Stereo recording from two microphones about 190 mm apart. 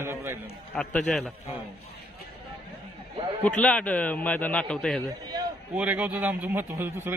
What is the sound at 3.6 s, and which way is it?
A man's voice, 5° left (ahead or behind).